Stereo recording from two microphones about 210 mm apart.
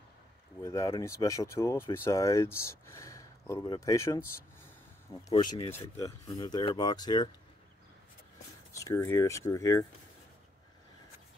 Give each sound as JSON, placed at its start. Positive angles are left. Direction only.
{"t": 0.6, "sound": "speech", "side_deg": 15}
{"t": 5.3, "sound": "speech", "side_deg": 20}
{"t": 8.7, "sound": "speech", "side_deg": 15}